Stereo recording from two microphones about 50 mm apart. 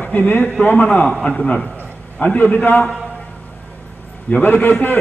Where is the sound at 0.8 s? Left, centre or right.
Left.